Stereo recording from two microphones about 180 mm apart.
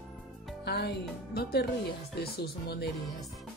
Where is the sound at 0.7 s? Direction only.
65° left (ahead or behind).